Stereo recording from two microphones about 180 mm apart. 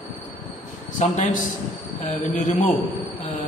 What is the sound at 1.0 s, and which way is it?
A man's voice, 40° left (ahead or behind).